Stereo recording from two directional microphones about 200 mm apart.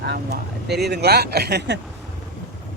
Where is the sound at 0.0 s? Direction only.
55° right (ahead or behind).